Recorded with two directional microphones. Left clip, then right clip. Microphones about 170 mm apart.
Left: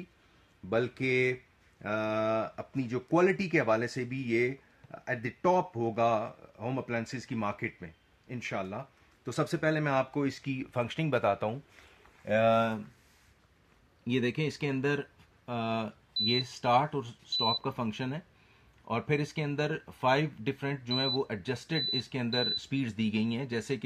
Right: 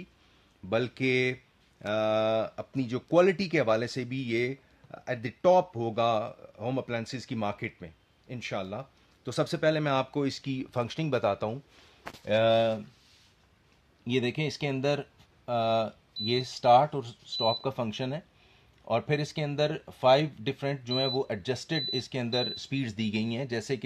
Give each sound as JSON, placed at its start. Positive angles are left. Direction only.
{"t": 0.7, "sound": "speech", "side_deg": -60}
{"t": 14.0, "sound": "speech", "side_deg": -50}